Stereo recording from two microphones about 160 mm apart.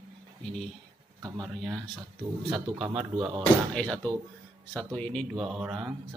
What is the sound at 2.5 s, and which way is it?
Speech, 30° right (ahead or behind).